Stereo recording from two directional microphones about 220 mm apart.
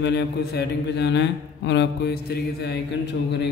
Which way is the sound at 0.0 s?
50° left (ahead or behind).